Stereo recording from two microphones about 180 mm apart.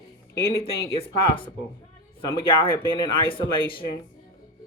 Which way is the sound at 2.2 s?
30° left (ahead or behind).